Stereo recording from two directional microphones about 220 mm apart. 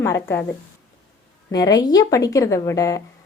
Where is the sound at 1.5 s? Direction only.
15° left (ahead or behind).